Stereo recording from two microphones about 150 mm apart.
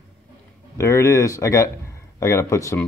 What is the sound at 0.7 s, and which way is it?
Speech, 20° left (ahead or behind).